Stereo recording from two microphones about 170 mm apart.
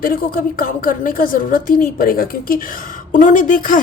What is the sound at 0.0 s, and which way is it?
A woman's voice, 60° left (ahead or behind).